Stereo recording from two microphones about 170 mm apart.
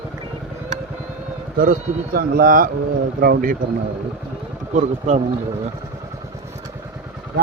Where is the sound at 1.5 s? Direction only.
55° right (ahead or behind).